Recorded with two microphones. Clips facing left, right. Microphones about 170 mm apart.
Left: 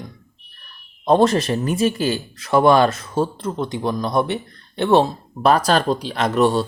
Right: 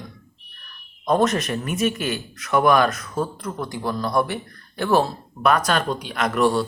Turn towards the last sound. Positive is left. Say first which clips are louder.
# left 2 dB
turn(degrees=25)  # may be behind; listen again after turning